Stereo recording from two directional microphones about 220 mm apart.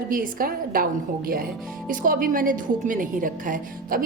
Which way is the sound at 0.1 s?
40° right (ahead or behind).